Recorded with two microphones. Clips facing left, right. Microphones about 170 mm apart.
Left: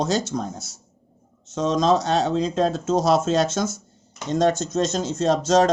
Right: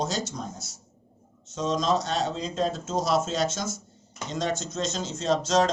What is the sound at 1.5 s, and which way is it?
Speech, 60° left (ahead or behind).